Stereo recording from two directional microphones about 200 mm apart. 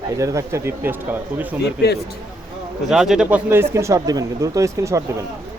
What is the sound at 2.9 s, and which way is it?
Speech, 5° right (ahead or behind).